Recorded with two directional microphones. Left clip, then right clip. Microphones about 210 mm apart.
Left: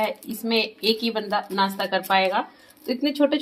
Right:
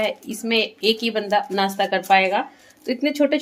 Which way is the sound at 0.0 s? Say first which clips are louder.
Right 2 dB; 25° right (ahead or behind).